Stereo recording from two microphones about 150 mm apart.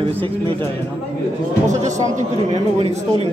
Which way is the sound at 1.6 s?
50° right (ahead or behind).